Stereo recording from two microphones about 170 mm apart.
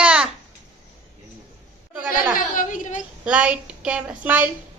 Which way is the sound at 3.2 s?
5° right (ahead or behind).